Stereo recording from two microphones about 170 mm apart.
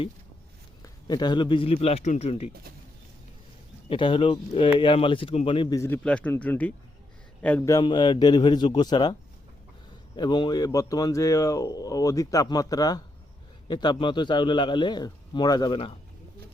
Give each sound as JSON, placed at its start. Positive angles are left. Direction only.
{"t": 0.8, "sound": "a man's voice", "side_deg": 25}
{"t": 3.8, "sound": "a man's voice", "side_deg": 30}
{"t": 7.7, "sound": "speech", "side_deg": 25}
{"t": 10.2, "sound": "speech", "side_deg": 25}